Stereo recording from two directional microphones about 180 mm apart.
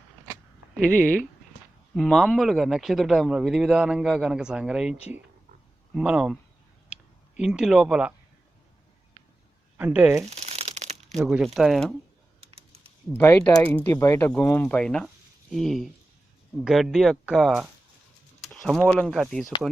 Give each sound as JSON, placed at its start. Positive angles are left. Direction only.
{"t": 0.8, "sound": "speech", "side_deg": 5}
{"t": 9.7, "sound": "speech", "side_deg": -10}
{"t": 10.2, "sound": "crumpling", "side_deg": -35}
{"t": 11.2, "sound": "speech", "side_deg": 0}
{"t": 12.5, "sound": "typing", "side_deg": -35}
{"t": 13.1, "sound": "speech", "side_deg": 10}
{"t": 18.4, "sound": "a sound", "side_deg": 0}
{"t": 18.9, "sound": "speech", "side_deg": 0}